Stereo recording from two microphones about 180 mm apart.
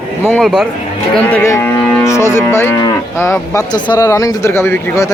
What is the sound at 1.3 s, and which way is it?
Cattle, 15° left (ahead or behind).